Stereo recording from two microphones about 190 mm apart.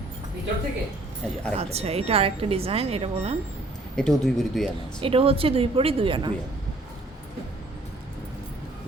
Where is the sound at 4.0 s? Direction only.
Centre (ahead or behind).